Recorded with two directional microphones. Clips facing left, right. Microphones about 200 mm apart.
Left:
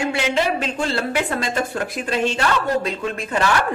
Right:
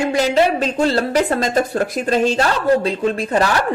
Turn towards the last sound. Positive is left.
turn(degrees=-35)  # may be behind; listen again after turning